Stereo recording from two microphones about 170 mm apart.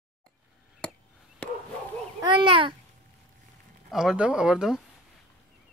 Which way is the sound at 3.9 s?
5° right (ahead or behind).